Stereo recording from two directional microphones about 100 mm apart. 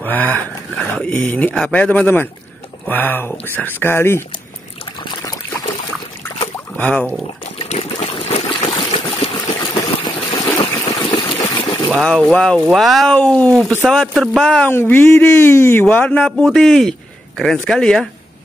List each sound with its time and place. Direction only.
0.0 s a sound: 15° left (ahead or behind)
1.5 s a man's voice: 10° left (ahead or behind)
5.0 s trickle: 40° left (ahead or behind)
6.8 s a man's voice: 15° left (ahead or behind)
7.5 s trickle: 80° left
9.5 s water: 40° left (ahead or behind)
11.0 s boat: 55° left (ahead or behind)
12.0 s a man's voice: 5° left (ahead or behind)
14.1 s speech: centre (ahead or behind)
14.7 s speech: 20° left (ahead or behind); by 18.0 s 5° left (ahead or behind)